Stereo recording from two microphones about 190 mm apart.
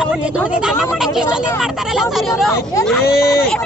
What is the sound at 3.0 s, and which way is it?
Speech, 55° left (ahead or behind).